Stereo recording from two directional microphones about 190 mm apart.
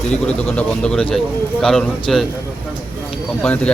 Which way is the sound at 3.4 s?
5° left (ahead or behind).